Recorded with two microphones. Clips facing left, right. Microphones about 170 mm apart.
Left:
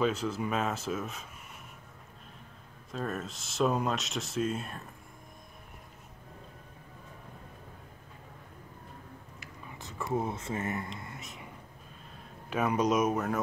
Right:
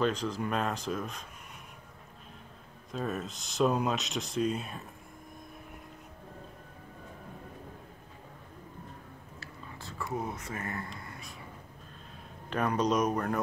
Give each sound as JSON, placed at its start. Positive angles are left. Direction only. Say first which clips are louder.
{"t": 0.0, "sound": "speech", "louder": "even", "side_deg": 5}
{"t": 2.9, "sound": "speech", "louder": "right 1 dB", "side_deg": 0}
{"t": 9.4, "sound": "a sound", "louder": "right 1 dB", "side_deg": 20}
{"t": 12.4, "sound": "speech", "louder": "left 1 dB", "side_deg": 10}